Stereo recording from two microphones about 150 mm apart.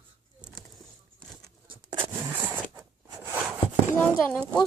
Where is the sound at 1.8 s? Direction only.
35° right (ahead or behind).